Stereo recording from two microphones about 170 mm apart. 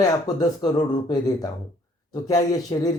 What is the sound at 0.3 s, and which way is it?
Speech, 25° left (ahead or behind).